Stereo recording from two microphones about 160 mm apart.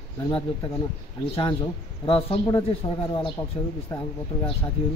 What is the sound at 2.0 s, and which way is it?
Speech, 35° left (ahead or behind).